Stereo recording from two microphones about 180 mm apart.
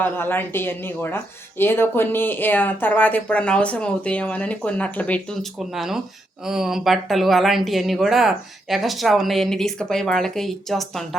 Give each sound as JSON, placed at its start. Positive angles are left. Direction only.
{"t": 0.0, "sound": "speech", "side_deg": 10}